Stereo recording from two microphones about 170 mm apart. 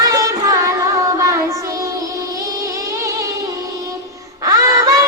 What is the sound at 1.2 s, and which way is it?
Child singing, 20° right (ahead or behind).